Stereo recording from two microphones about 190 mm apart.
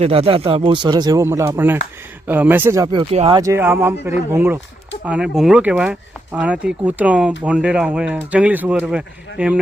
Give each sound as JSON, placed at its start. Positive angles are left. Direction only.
{"t": 0.0, "sound": "speech", "side_deg": -30}
{"t": 3.3, "sound": "speech", "side_deg": -15}